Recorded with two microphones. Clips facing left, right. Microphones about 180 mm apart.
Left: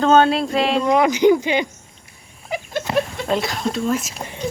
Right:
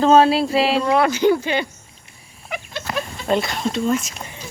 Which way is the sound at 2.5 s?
35° left (ahead or behind).